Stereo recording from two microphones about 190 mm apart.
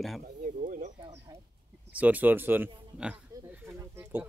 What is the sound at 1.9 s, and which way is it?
Speech, 10° right (ahead or behind).